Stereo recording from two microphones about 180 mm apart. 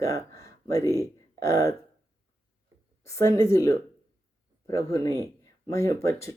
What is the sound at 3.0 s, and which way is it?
Speech, 15° left (ahead or behind).